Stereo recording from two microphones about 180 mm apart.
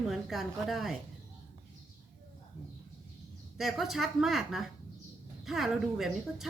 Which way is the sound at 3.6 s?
Centre (ahead or behind).